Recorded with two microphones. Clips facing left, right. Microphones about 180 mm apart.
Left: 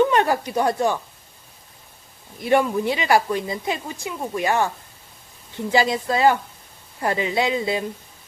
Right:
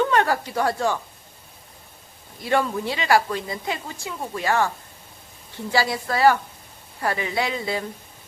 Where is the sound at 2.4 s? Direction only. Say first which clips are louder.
Left 4 dB; 20° left (ahead or behind).